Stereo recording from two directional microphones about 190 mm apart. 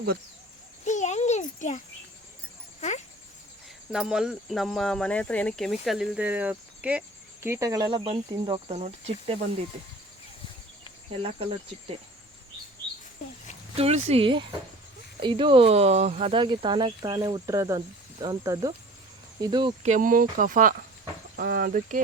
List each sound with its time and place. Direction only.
0.9 s a sound: 40° left (ahead or behind)
3.9 s speech: 5° right (ahead or behind); by 8.7 s 20° right (ahead or behind)
8.7 s speech: 35° right (ahead or behind)
11.2 s speech: 30° right (ahead or behind)
13.7 s speech: 30° right (ahead or behind)
19.8 s speech: 40° right (ahead or behind)